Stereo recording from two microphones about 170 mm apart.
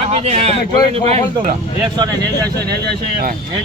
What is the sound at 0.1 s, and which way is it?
Speech, 35° right (ahead or behind).